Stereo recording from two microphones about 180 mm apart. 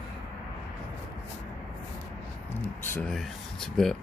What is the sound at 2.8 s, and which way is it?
Speech, 10° left (ahead or behind).